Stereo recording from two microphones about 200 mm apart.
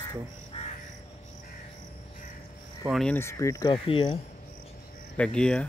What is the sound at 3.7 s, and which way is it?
Speech, 25° left (ahead or behind).